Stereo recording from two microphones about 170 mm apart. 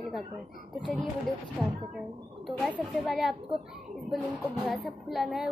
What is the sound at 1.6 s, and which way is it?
Speech, centre (ahead or behind).